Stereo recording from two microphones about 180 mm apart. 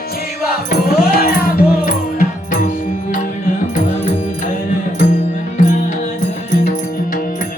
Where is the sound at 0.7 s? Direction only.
60° left (ahead or behind).